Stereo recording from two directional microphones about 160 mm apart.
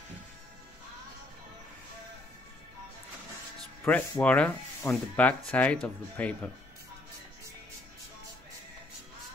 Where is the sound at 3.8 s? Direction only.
10° left (ahead or behind).